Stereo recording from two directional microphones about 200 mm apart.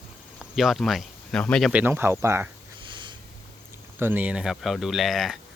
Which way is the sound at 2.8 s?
25° right (ahead or behind).